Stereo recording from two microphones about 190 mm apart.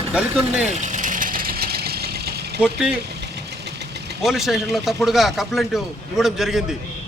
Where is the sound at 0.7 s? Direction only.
40° right (ahead or behind); by 2.4 s 55° right (ahead or behind).